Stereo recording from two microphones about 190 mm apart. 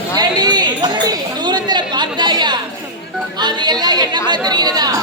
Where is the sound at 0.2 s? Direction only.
20° right (ahead or behind).